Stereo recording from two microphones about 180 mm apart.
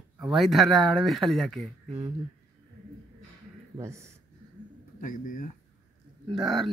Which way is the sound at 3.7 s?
15° right (ahead or behind).